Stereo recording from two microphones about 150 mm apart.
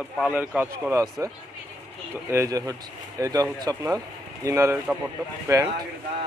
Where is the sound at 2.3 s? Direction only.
20° right (ahead or behind).